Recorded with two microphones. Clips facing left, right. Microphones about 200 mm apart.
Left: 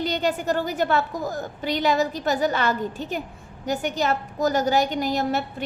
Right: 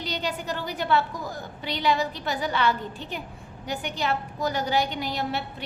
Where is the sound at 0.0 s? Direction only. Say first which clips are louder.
Left 7 dB; 50° left (ahead or behind).